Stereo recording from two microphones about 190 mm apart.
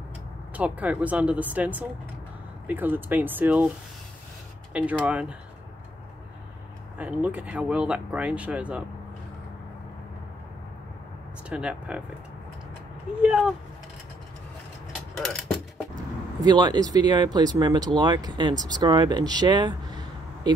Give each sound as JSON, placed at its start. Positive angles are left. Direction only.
{"t": 0.6, "sound": "speech", "side_deg": -5}
{"t": 5.0, "sound": "speech", "side_deg": -5}
{"t": 7.0, "sound": "speech", "side_deg": -5}
{"t": 11.4, "sound": "speech", "side_deg": -5}
{"t": 13.2, "sound": "speech", "side_deg": -5}
{"t": 15.1, "sound": "mechanisms", "side_deg": 0}
{"t": 16.3, "sound": "speech", "side_deg": -20}